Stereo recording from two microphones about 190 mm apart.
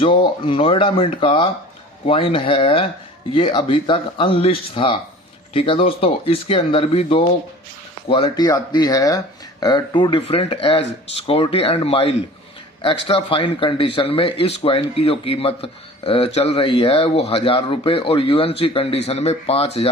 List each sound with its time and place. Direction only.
0.0 s a man's voice: 25° left (ahead or behind)